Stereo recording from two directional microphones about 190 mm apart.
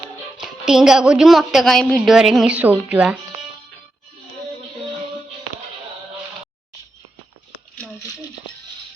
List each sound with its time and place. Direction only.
0.3 s a woman's voice: centre (ahead or behind)